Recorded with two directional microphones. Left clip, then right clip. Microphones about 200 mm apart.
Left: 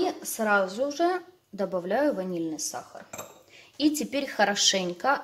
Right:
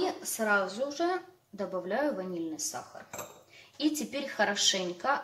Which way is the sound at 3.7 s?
45° left (ahead or behind).